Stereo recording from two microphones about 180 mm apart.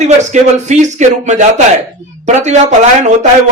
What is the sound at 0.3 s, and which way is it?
A man's voice, 40° right (ahead or behind).